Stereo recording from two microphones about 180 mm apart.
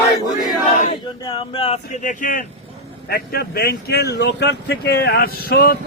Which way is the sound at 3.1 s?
60° left (ahead or behind).